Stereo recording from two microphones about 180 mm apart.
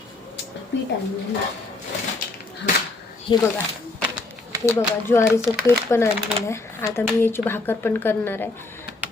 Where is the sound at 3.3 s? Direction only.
25° left (ahead or behind).